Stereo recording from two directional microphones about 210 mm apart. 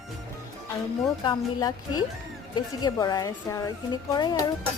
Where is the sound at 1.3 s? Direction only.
20° left (ahead or behind).